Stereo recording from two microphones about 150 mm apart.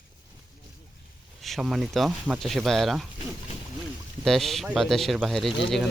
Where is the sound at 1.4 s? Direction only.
Centre (ahead or behind).